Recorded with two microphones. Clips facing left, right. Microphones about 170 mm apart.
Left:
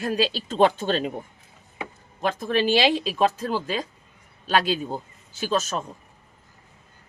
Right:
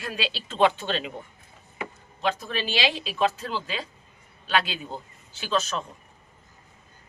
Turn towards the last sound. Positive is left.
turn(degrees=45)  # may be behind; listen again after turning